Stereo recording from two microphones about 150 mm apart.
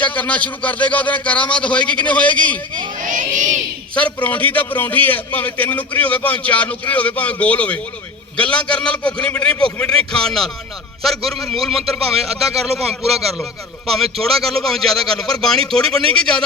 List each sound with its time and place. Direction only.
0.0 s a man's voice: 10° left (ahead or behind)
3.0 s a sound: 60° right (ahead or behind)
3.9 s a man's voice: 10° left (ahead or behind)